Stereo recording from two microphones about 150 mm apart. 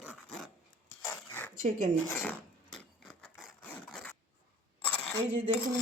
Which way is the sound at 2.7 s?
5° left (ahead or behind).